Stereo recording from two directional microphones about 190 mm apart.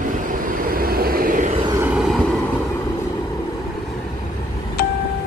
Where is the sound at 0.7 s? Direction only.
50° right (ahead or behind).